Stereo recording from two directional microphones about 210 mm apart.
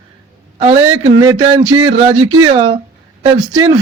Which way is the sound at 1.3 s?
20° right (ahead or behind).